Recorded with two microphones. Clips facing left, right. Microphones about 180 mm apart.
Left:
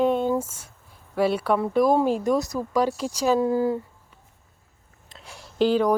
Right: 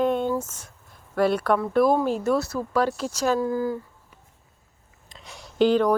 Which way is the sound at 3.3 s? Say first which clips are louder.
Left 3 dB; 25° left (ahead or behind).